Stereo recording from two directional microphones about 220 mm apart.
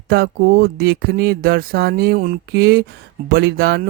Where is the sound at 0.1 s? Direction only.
45° right (ahead or behind).